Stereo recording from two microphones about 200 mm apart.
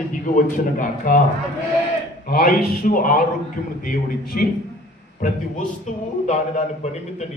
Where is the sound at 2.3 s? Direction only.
50° left (ahead or behind).